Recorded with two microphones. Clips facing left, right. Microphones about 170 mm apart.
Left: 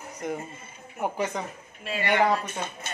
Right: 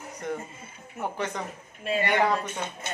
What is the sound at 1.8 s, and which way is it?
Speech, 45° right (ahead or behind).